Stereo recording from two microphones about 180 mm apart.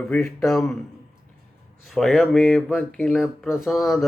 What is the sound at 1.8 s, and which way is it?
Speech, centre (ahead or behind).